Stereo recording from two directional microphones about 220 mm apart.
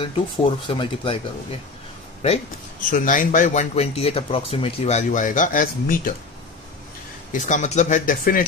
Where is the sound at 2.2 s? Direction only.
35° left (ahead or behind).